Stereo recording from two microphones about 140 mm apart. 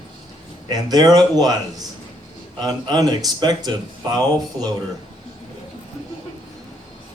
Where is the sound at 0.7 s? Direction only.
30° right (ahead or behind).